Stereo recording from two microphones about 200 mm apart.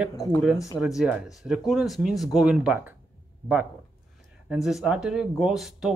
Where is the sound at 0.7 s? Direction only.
Centre (ahead or behind).